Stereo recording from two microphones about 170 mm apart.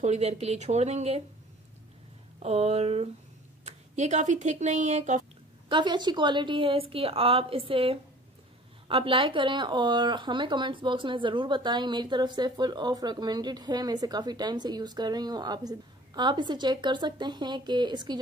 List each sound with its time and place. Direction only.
0.0 s a woman's voice: 40° right (ahead or behind)
2.4 s a woman's voice: 40° right (ahead or behind)
5.7 s a woman's voice: 25° right (ahead or behind)